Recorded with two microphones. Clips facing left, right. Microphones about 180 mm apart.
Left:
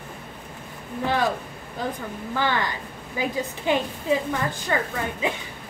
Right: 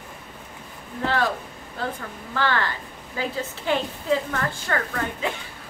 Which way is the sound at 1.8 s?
15° left (ahead or behind).